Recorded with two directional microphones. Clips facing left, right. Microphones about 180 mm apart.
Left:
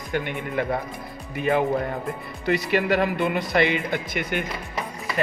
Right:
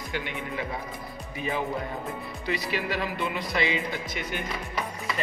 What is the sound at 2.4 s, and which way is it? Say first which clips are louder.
Speech: left 8 dB; 55° left (ahead or behind).